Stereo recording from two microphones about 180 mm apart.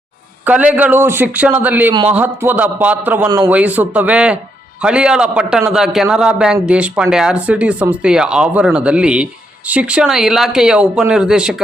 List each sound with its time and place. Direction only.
0.4 s a man's voice: 10° right (ahead or behind)
3.2 s a man's voice: 20° right (ahead or behind)
3.5 s a man's voice: 10° right (ahead or behind)